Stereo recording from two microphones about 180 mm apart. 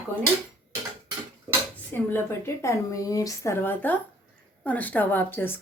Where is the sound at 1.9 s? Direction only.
10° left (ahead or behind).